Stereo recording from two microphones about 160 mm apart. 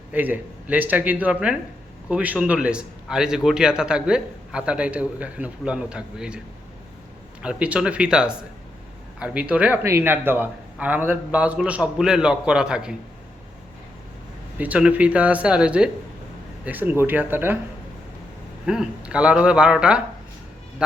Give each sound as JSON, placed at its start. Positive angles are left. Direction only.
{"t": 0.1, "sound": "a man's voice", "side_deg": -10}
{"t": 7.4, "sound": "a man's voice", "side_deg": -5}
{"t": 14.6, "sound": "a man's voice", "side_deg": -10}
{"t": 18.6, "sound": "a man's voice", "side_deg": -5}